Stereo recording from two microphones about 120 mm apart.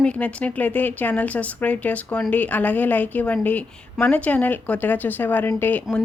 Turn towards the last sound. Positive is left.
turn(degrees=15)  # may be behind; listen again after turning